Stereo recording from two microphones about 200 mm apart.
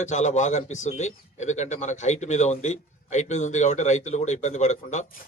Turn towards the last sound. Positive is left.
turn(degrees=35)  # may be behind; listen again after turning